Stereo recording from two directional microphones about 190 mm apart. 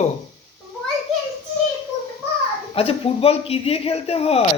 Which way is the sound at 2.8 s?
30° left (ahead or behind).